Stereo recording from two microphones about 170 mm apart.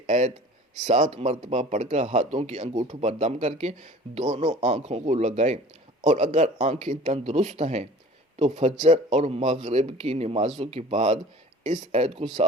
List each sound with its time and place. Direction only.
0.1 s speech: 40° right (ahead or behind)